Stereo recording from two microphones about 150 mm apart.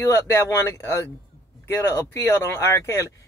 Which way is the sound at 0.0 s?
20° left (ahead or behind).